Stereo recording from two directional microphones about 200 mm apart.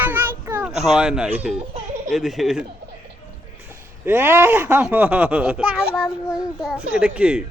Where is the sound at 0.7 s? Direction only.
35° right (ahead or behind).